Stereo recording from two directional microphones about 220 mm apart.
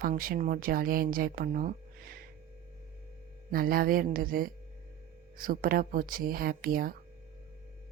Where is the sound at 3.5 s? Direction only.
40° right (ahead or behind).